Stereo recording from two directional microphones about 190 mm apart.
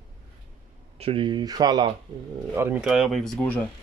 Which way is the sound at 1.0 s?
30° right (ahead or behind).